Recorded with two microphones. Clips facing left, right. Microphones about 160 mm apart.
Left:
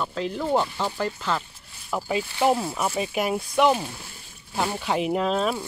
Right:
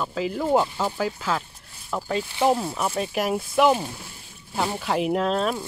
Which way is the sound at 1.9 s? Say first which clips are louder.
Even; 5° left (ahead or behind).